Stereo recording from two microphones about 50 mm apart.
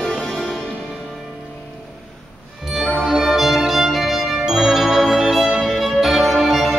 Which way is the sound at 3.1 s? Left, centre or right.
Centre.